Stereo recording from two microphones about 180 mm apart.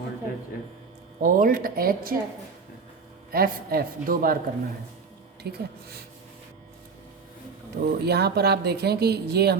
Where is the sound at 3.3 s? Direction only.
55° right (ahead or behind).